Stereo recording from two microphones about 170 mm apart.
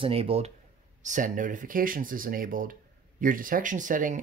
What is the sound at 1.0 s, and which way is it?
Speech, 50° right (ahead or behind).